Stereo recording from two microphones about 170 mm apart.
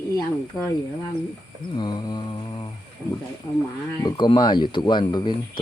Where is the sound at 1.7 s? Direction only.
25° left (ahead or behind).